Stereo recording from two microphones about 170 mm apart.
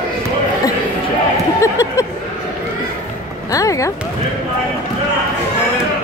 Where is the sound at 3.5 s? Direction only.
20° left (ahead or behind).